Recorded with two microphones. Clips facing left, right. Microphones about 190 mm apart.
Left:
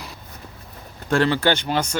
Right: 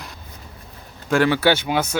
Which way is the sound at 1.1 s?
5° right (ahead or behind).